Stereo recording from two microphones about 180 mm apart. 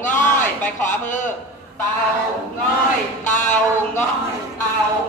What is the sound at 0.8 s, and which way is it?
Speech, 45° left (ahead or behind).